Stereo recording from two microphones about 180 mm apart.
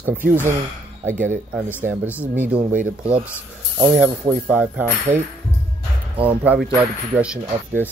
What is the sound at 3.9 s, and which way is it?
Speech, 5° right (ahead or behind).